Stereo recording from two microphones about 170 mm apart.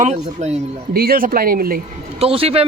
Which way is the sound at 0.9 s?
60° right (ahead or behind).